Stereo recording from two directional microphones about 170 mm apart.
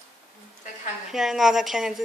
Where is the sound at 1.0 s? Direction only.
Centre (ahead or behind).